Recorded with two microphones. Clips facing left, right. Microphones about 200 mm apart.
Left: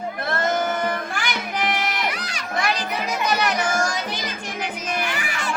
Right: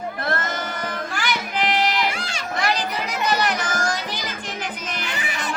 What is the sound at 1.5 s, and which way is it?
Music, 55° right (ahead or behind).